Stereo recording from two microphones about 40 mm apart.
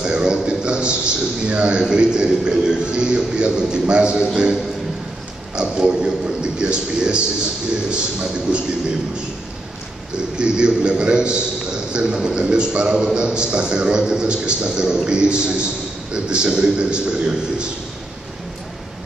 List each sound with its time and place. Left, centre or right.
0.0 s a man's voice: right
5.6 s a man's voice: right
10.1 s a man's voice: right